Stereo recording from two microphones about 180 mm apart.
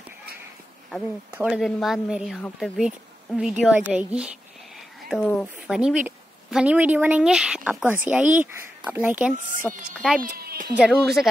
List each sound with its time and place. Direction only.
1.3 s a woman's voice: 5° right (ahead or behind)
10.2 s a woman's voice: 55° right (ahead or behind)
10.8 s speech: centre (ahead or behind)